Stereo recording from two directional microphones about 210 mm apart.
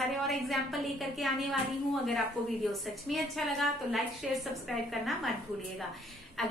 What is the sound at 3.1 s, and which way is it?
A woman's voice, centre (ahead or behind).